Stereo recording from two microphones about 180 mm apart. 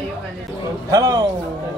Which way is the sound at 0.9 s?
20° right (ahead or behind).